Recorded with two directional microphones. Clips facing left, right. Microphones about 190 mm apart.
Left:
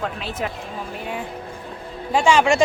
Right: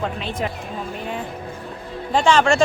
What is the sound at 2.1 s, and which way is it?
Speech, 10° left (ahead or behind).